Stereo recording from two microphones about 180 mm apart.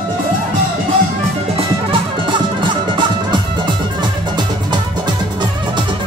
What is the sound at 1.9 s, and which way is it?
Music, 30° right (ahead or behind).